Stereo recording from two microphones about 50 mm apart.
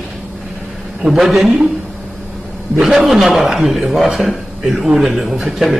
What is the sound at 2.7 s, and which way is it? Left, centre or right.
A man's voice, centre.